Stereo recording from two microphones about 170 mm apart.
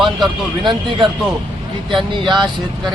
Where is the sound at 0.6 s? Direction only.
30° right (ahead or behind).